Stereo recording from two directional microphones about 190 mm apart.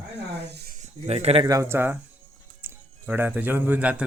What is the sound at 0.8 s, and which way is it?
Speech, 35° right (ahead or behind).